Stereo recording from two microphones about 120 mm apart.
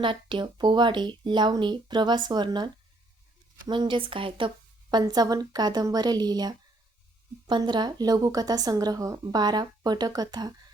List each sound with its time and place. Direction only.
0.0 s a woman's voice: 45° right (ahead or behind)
3.7 s a woman's voice: 40° right (ahead or behind)